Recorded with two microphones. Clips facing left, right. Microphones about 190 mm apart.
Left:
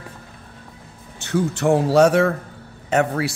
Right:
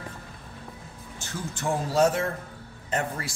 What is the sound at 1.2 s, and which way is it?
A man's voice, 70° left (ahead or behind).